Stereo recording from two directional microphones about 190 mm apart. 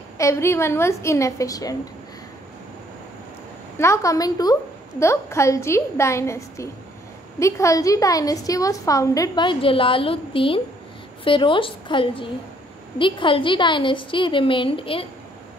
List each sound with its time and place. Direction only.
0.2 s a woman's voice: 15° left (ahead or behind)
3.7 s a woman's voice: 15° left (ahead or behind)